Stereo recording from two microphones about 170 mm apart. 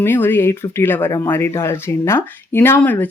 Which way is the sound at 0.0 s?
10° left (ahead or behind).